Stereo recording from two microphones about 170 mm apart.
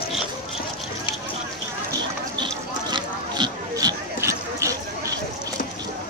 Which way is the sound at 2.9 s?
25° right (ahead or behind).